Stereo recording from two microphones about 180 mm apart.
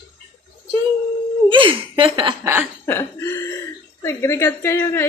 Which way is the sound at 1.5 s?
30° right (ahead or behind).